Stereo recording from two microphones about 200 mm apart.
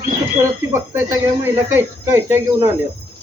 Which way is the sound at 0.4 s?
10° right (ahead or behind).